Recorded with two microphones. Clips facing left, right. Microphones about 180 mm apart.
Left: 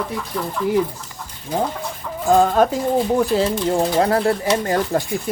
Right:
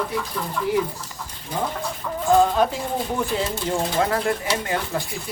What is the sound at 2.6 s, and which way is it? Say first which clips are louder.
Speech: left 5 dB; 45° left (ahead or behind).